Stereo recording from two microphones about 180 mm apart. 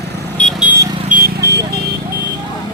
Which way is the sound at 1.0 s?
55° right (ahead or behind).